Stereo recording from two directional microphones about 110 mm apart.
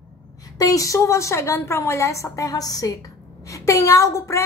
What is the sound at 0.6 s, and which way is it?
A woman's voice, 30° left (ahead or behind).